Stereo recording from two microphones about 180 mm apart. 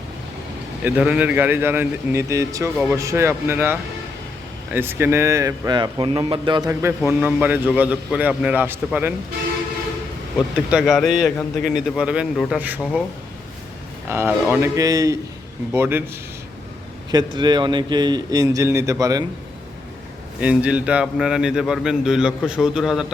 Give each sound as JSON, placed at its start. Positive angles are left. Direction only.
{"t": 0.9, "sound": "a man's voice", "side_deg": -10}
{"t": 6.7, "sound": "a man's voice", "side_deg": -10}
{"t": 10.7, "sound": "a man's voice", "side_deg": -5}
{"t": 14.1, "sound": "a man's voice", "side_deg": -15}
{"t": 17.1, "sound": "a man's voice", "side_deg": -25}
{"t": 20.4, "sound": "a man's voice", "side_deg": -5}